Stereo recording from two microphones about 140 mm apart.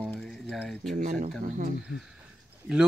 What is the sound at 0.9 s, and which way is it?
Speech, 75° right (ahead or behind).